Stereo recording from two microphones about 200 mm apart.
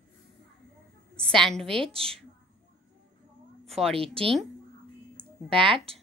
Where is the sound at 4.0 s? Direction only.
30° right (ahead or behind).